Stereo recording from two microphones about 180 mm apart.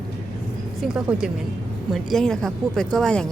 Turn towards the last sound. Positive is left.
turn(degrees=5)  # may be behind; listen again after turning